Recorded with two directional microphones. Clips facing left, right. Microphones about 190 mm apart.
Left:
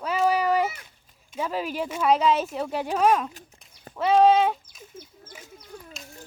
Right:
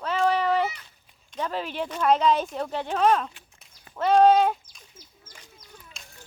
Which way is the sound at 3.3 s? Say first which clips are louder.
Left 8 dB; 40° left (ahead or behind).